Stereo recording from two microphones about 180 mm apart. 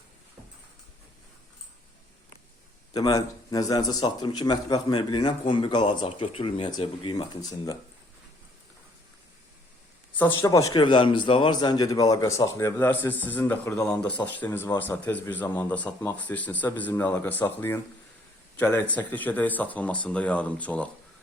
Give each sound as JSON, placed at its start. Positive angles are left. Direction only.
{"t": 2.9, "sound": "speech", "side_deg": 20}
{"t": 10.2, "sound": "a man's voice", "side_deg": 15}